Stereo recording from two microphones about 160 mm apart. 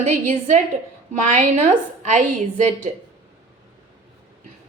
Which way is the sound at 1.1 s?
50° right (ahead or behind).